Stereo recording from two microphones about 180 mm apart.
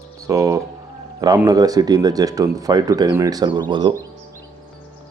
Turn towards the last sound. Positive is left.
turn(degrees=-25)  # may be behind; listen again after turning